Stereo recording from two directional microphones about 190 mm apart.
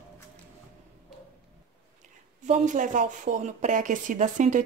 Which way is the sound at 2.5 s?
40° right (ahead or behind).